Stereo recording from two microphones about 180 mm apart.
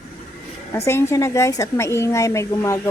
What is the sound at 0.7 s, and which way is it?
Speech, 15° left (ahead or behind).